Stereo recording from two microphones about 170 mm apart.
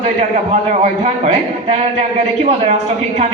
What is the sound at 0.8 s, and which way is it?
A man's voice, 40° right (ahead or behind).